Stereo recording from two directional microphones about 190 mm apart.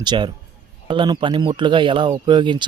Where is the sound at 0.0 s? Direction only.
25° right (ahead or behind).